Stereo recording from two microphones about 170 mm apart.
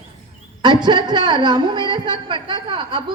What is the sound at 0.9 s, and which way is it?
Speech, 25° right (ahead or behind).